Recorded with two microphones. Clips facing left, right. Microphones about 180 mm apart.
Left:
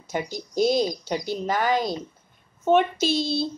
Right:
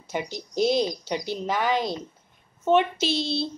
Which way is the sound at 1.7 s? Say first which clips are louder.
Left 1 dB; 40° left (ahead or behind).